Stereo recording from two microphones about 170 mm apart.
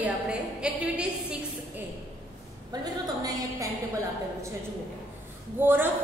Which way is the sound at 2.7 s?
20° right (ahead or behind).